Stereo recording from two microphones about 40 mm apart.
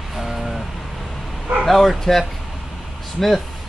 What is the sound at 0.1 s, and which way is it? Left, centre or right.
Vehicle, centre.